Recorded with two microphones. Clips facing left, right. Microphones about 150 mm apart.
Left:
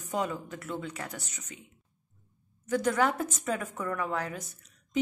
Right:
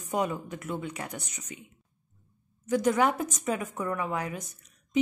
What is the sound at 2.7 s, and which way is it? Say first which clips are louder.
Speech: right 2 dB; 10° right (ahead or behind).